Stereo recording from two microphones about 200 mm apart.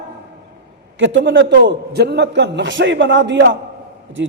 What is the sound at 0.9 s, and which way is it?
A man's voice, 65° right (ahead or behind).